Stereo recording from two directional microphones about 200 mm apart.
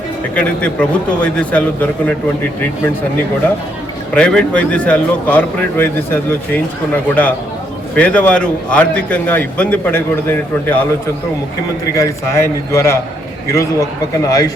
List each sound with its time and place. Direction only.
0.3 s a man's voice: 5° left (ahead or behind)
4.1 s a man's voice: 5° left (ahead or behind)
11.9 s a man's voice: 15° left (ahead or behind)